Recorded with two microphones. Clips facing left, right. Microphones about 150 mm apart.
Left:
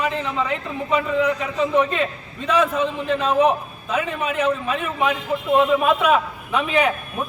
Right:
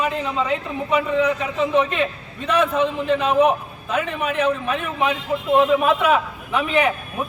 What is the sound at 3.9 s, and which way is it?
Speech, 10° left (ahead or behind).